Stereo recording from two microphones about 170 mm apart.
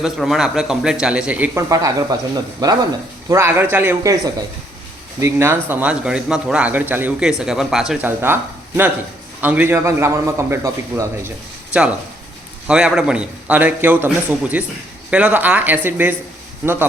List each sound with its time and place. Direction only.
0.0 s a man's voice: centre (ahead or behind)
1.7 s speech: 20° right (ahead or behind); by 8.1 s centre (ahead or behind)
8.2 s speech: 10° right (ahead or behind)
12.6 s speech: 5° right (ahead or behind)